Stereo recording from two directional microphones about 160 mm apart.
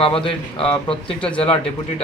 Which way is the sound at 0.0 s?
35° left (ahead or behind).